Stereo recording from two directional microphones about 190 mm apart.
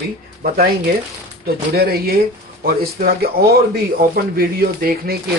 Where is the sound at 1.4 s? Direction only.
55° right (ahead or behind).